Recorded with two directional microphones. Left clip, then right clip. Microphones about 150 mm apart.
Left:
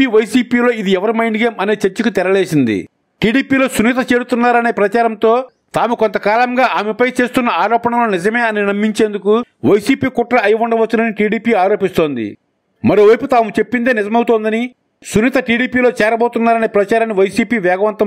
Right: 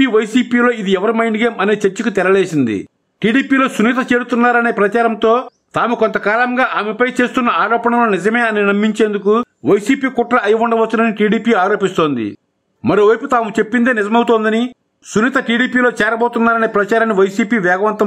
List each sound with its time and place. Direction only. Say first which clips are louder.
0.0 s a man's voice: left 1 dB; 30° left (ahead or behind)